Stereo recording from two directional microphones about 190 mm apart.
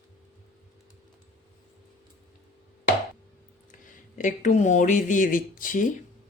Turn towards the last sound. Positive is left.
turn(degrees=45)  # may be behind; listen again after turning